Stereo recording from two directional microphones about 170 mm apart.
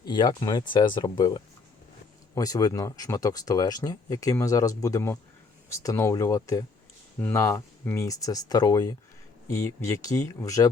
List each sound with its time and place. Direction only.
0.0 s speech: 25° left (ahead or behind)